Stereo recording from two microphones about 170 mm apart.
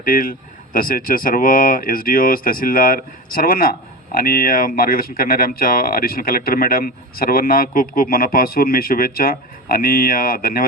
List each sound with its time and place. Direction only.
0.0 s speech: 55° left (ahead or behind)